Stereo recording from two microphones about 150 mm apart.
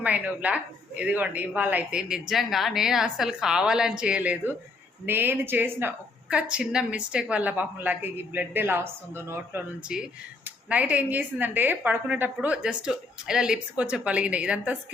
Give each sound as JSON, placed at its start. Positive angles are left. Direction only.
{"t": 0.0, "sound": "a woman's voice", "side_deg": -10}
{"t": 9.9, "sound": "a woman's voice", "side_deg": -5}